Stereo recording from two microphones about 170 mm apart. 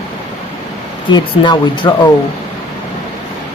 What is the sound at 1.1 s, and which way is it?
Speech, 25° left (ahead or behind).